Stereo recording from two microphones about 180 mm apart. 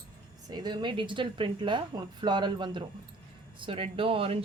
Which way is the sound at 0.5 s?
25° right (ahead or behind).